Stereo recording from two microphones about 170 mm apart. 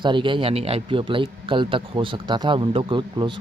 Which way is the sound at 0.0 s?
30° right (ahead or behind).